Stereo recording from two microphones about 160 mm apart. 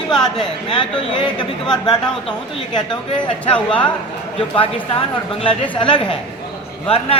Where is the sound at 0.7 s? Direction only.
30° left (ahead or behind).